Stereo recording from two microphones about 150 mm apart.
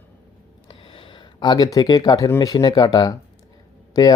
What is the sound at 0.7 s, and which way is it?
Speech, 35° left (ahead or behind).